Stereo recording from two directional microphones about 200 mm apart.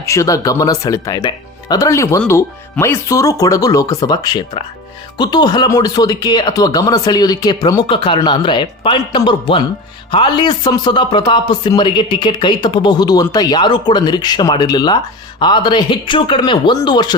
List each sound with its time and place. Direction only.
0.0 s speech: 15° left (ahead or behind)